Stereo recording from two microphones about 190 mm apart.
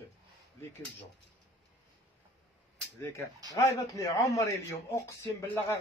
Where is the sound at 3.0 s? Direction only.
15° left (ahead or behind).